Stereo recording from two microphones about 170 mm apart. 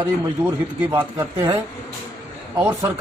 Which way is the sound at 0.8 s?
20° right (ahead or behind).